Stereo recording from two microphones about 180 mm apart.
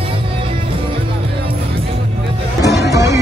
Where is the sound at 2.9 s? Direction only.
15° right (ahead or behind).